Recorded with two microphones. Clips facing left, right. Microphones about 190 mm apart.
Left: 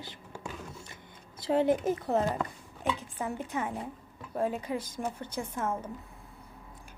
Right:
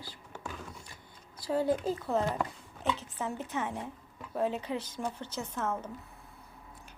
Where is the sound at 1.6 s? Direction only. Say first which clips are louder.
Left 3 dB; 20° left (ahead or behind).